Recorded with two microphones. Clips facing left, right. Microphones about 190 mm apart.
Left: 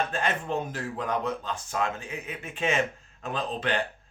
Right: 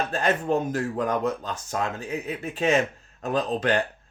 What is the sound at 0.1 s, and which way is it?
Speech, 40° right (ahead or behind).